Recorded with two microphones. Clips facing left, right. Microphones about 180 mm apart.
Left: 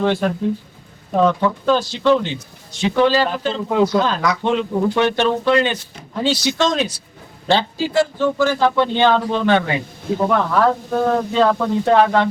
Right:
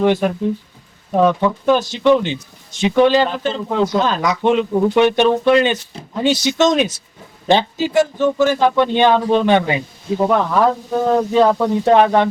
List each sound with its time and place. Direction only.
0.0 s speech: 15° right (ahead or behind)